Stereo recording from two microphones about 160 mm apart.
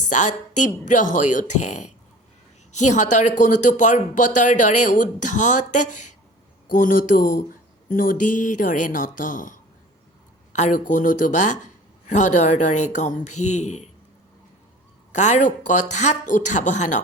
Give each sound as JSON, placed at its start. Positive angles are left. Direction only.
{"t": 0.0, "sound": "speech", "side_deg": 50}
{"t": 15.1, "sound": "speech", "side_deg": 45}